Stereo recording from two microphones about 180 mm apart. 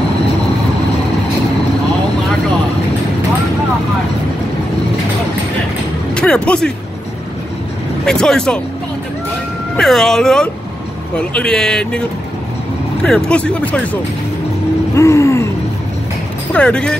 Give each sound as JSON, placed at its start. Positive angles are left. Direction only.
{"t": 6.1, "sound": "music", "side_deg": 5}
{"t": 8.0, "sound": "speech", "side_deg": 5}
{"t": 9.8, "sound": "speech", "side_deg": 0}
{"t": 13.0, "sound": "speech", "side_deg": 5}
{"t": 15.0, "sound": "speech", "side_deg": 15}
{"t": 16.5, "sound": "speech", "side_deg": 5}